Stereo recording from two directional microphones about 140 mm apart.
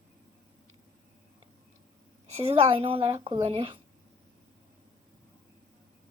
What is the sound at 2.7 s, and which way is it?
Speech, 40° right (ahead or behind).